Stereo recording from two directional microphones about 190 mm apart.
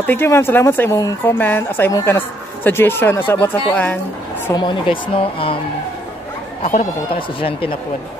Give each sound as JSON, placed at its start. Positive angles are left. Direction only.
{"t": 0.0, "sound": "a woman's voice", "side_deg": 10}
{"t": 4.5, "sound": "speech", "side_deg": 25}
{"t": 6.6, "sound": "speech", "side_deg": 45}
{"t": 7.2, "sound": "speech", "side_deg": 30}